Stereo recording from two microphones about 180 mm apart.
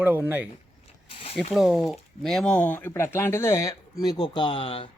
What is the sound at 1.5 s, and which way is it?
Speech, centre (ahead or behind).